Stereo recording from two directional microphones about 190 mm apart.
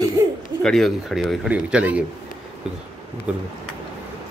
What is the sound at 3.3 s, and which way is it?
Speech, 5° right (ahead or behind).